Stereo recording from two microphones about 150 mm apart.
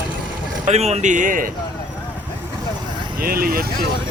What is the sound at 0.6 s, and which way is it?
Speech, 45° right (ahead or behind).